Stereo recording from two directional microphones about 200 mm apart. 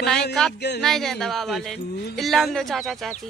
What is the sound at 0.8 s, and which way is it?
Speech, centre (ahead or behind).